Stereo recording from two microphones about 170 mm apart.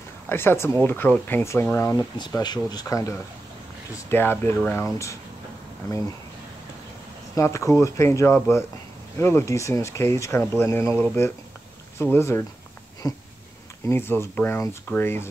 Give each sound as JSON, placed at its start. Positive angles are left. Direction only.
{"t": 0.3, "sound": "speech", "side_deg": 15}
{"t": 2.1, "sound": "speech", "side_deg": 25}
{"t": 7.3, "sound": "speech", "side_deg": 15}